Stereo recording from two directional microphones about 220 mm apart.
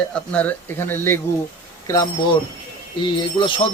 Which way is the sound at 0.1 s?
5° left (ahead or behind).